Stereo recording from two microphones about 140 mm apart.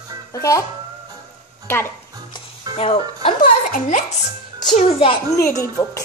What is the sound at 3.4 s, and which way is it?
Music, 75° left (ahead or behind).